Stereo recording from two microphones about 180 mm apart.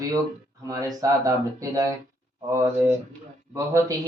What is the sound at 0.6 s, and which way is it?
Speech, 20° right (ahead or behind).